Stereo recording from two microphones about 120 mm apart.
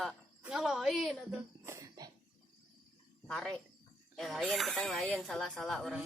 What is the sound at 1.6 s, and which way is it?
Cough, 25° right (ahead or behind).